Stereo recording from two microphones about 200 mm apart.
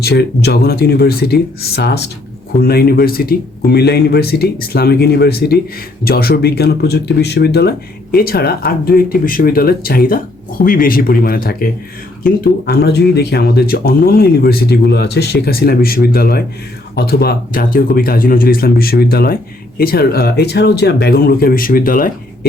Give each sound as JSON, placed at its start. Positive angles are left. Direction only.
{"t": 0.0, "sound": "speech", "side_deg": 55}